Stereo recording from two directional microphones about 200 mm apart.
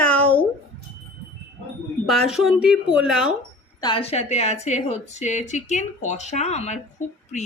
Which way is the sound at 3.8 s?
25° left (ahead or behind).